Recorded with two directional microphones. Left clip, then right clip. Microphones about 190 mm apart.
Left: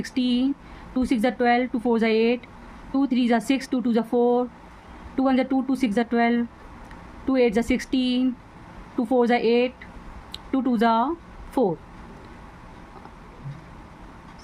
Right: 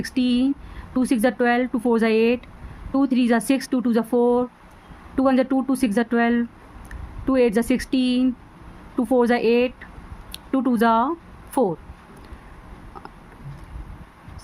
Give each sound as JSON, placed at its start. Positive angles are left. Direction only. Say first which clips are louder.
{"t": 0.0, "sound": "speech", "louder": "right 2 dB", "side_deg": -20}